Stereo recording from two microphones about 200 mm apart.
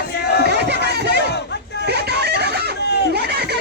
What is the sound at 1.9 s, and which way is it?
Music, 55° right (ahead or behind).